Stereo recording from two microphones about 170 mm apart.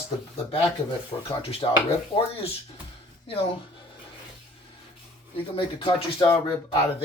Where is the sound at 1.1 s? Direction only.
20° left (ahead or behind).